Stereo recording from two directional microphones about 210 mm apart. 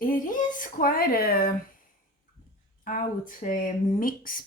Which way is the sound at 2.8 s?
40° left (ahead or behind).